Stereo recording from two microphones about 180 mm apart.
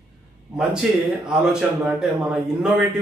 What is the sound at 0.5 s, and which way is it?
A man's voice, 5° right (ahead or behind).